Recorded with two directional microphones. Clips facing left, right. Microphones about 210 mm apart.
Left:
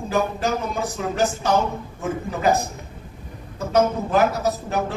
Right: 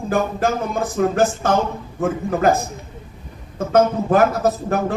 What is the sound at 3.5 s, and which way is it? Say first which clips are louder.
Speech: right 3 dB; 55° right (ahead or behind).